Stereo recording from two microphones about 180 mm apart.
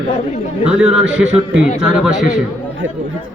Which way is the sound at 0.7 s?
5° right (ahead or behind).